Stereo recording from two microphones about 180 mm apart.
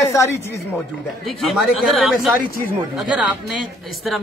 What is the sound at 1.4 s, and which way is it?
Speech, centre (ahead or behind).